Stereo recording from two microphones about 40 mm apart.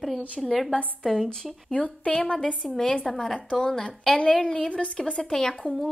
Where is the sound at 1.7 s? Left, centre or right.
Left.